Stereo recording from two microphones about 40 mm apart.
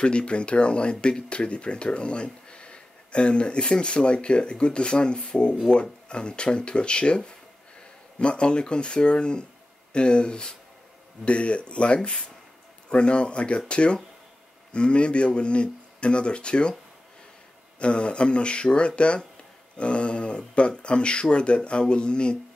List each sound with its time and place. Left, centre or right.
0.0 s speech: left
17.7 s speech: left